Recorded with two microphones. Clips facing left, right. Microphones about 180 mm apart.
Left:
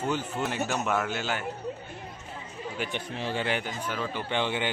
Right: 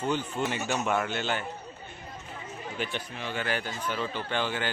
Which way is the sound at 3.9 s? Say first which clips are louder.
Right 1 dB; 5° left (ahead or behind).